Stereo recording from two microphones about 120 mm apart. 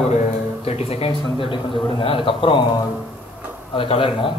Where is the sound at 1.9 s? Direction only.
50° left (ahead or behind).